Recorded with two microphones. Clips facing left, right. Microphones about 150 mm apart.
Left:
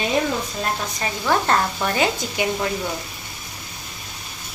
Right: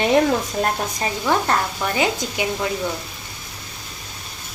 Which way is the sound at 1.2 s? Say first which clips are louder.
Left 1 dB; 5° right (ahead or behind).